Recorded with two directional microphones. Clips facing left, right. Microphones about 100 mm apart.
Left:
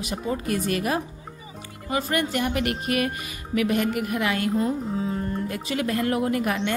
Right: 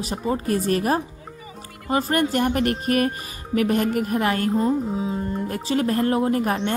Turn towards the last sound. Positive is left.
turn(degrees=-35)  # may be behind; listen again after turning